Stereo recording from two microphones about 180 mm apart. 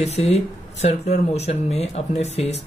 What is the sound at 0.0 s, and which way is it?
Speech, 35° left (ahead or behind).